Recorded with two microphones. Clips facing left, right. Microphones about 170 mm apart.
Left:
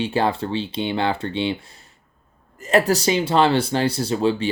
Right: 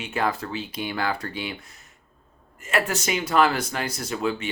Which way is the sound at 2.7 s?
35° left (ahead or behind).